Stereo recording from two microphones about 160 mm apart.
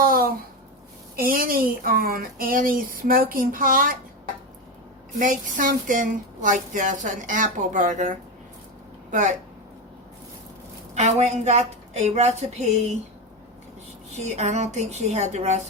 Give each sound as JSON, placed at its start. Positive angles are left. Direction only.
{"t": 0.0, "sound": "a sound", "side_deg": -65}
{"t": 1.1, "sound": "speech", "side_deg": -60}
{"t": 5.2, "sound": "a woman's voice", "side_deg": -55}
{"t": 10.9, "sound": "a woman's voice", "side_deg": -45}
{"t": 14.1, "sound": "a woman's voice", "side_deg": -45}